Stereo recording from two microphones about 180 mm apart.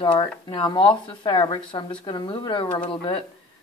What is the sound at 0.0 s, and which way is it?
Speech, 30° left (ahead or behind).